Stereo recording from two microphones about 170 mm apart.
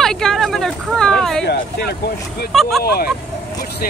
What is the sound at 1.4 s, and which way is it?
Vehicle, 75° left (ahead or behind).